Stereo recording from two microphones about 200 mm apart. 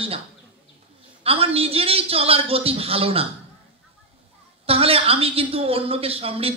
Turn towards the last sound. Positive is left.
turn(degrees=-30)  # may be behind; listen again after turning